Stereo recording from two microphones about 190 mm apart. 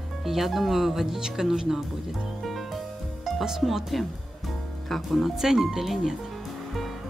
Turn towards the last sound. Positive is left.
turn(degrees=0)  # may be behind; listen again after turning